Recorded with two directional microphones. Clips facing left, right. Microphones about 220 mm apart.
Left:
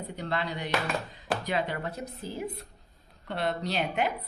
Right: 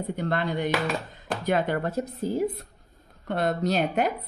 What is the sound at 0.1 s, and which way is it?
A woman's voice, 50° right (ahead or behind).